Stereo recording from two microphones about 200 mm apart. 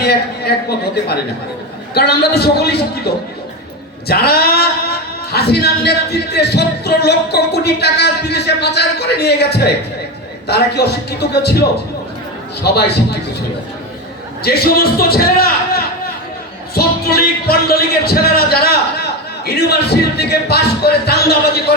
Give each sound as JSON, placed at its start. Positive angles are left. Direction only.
{"t": 0.0, "sound": "a sound", "side_deg": 55}
{"t": 2.0, "sound": "speech", "side_deg": 55}
{"t": 4.1, "sound": "speech", "side_deg": 50}
{"t": 12.6, "sound": "speech", "side_deg": 55}
{"t": 14.4, "sound": "speech", "side_deg": 50}